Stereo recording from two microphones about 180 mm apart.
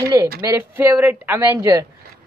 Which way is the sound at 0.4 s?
15° right (ahead or behind).